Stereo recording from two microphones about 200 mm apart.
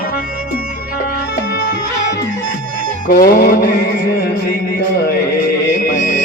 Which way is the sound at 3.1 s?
50° left (ahead or behind).